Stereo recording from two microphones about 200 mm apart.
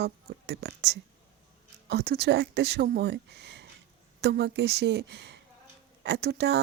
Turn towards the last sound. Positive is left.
turn(degrees=-55)  # may be behind; listen again after turning